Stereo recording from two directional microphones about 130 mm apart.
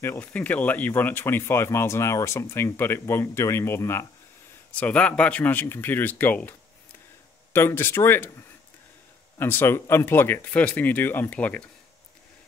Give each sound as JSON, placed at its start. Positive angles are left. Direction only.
{"t": 0.0, "sound": "speech", "side_deg": 15}
{"t": 7.5, "sound": "speech", "side_deg": 20}